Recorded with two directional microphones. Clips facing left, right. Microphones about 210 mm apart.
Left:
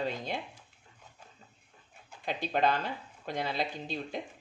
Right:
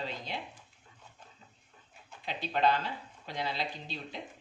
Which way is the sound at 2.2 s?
50° left (ahead or behind).